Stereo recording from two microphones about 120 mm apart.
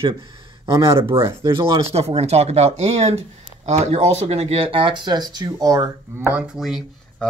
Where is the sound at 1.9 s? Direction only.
60° right (ahead or behind); by 5.9 s 30° right (ahead or behind).